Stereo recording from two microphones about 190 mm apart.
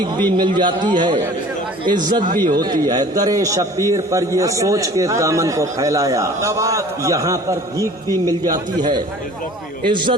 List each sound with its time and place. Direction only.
0.2 s a man's voice: 20° right (ahead or behind)